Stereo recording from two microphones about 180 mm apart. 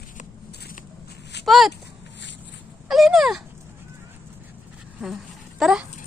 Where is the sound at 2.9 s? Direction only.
Centre (ahead or behind).